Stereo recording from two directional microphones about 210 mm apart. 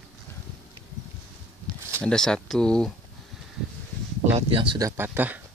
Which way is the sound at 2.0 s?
5° left (ahead or behind).